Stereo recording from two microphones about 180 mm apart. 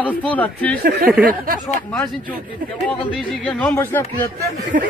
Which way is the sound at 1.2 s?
55° right (ahead or behind).